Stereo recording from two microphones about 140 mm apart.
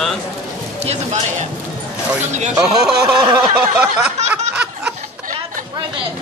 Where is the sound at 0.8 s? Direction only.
50° right (ahead or behind).